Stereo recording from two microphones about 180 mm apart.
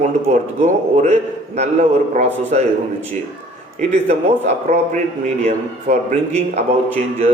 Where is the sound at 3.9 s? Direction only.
35° right (ahead or behind).